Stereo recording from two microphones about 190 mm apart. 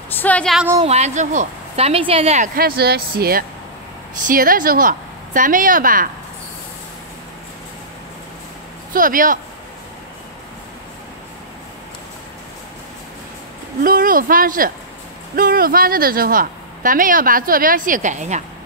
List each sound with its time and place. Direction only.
0.1 s a woman's voice: 10° left (ahead or behind)
0.8 s speech: 35° right (ahead or behind)
8.9 s speech: 45° right (ahead or behind)
13.8 s speech: 50° right (ahead or behind)